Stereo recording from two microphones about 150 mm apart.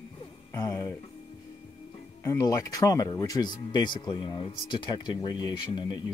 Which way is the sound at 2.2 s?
20° left (ahead or behind).